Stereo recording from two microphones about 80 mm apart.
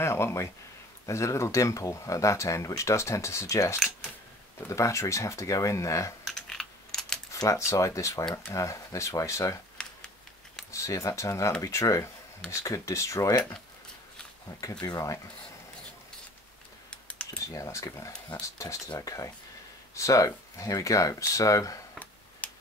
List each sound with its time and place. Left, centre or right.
0.0 s speech: left
6.2 s computer keyboard: centre
7.3 s speech: left
9.8 s a sound: centre
10.7 s speech: left
14.6 s speech: left
16.9 s typing: centre
17.6 s speech: left
22.4 s tick-tock: centre